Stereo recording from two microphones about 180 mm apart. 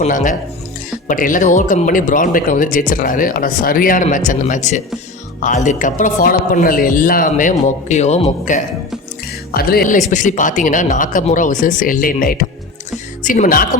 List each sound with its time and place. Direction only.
0.0 s speech: 45° left (ahead or behind)
9.5 s speech: 55° left (ahead or behind)
10.1 s speech: 45° left (ahead or behind)